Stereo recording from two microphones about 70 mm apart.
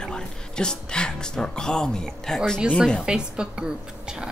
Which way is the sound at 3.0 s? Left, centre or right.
Centre.